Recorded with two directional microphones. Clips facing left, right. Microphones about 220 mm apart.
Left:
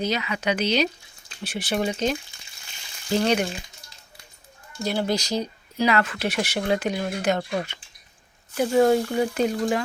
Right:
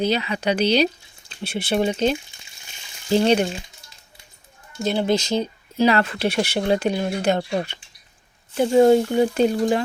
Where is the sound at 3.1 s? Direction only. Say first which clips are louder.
Right 4 dB; 25° right (ahead or behind).